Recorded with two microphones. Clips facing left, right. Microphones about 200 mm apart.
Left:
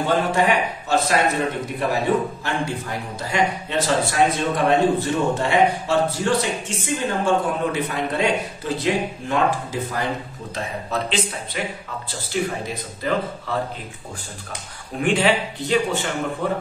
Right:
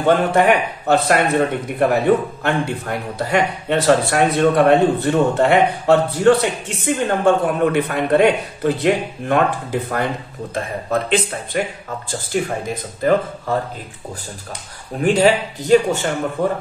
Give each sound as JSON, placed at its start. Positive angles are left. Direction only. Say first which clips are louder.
{"t": 0.0, "sound": "speech", "louder": "right 5 dB", "side_deg": -60}
{"t": 15.0, "sound": "a man's voice", "louder": "right 5 dB", "side_deg": -40}